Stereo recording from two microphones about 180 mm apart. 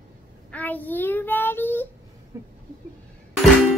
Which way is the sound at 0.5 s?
10° left (ahead or behind).